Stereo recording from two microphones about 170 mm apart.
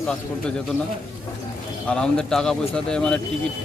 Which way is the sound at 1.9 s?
5° left (ahead or behind).